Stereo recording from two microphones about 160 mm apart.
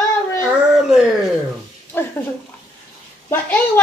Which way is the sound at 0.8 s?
Centre (ahead or behind).